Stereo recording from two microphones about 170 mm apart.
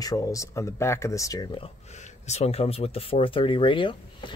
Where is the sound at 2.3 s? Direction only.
40° left (ahead or behind).